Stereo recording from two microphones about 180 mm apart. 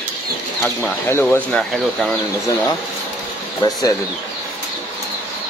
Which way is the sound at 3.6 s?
20° left (ahead or behind).